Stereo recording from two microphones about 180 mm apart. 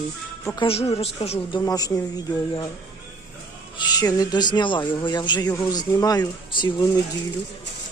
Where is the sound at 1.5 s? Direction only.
20° left (ahead or behind).